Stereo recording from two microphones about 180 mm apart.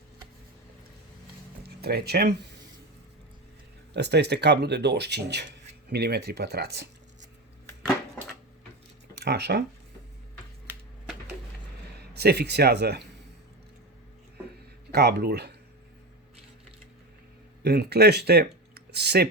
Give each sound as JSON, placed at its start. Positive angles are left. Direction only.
{"t": 1.8, "sound": "speech", "side_deg": -60}
{"t": 3.9, "sound": "speech", "side_deg": -70}
{"t": 9.1, "sound": "speech", "side_deg": -65}
{"t": 12.1, "sound": "speech", "side_deg": -65}
{"t": 14.9, "sound": "speech", "side_deg": -65}
{"t": 17.6, "sound": "speech", "side_deg": -65}